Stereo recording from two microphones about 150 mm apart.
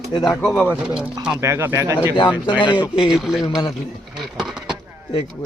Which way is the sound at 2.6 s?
30° left (ahead or behind).